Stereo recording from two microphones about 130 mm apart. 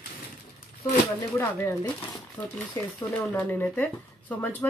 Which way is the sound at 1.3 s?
20° left (ahead or behind).